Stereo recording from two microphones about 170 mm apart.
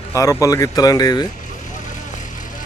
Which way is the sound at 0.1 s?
20° left (ahead or behind).